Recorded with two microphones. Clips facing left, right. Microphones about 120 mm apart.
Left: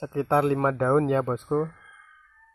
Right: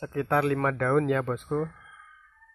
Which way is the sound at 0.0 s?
25° left (ahead or behind).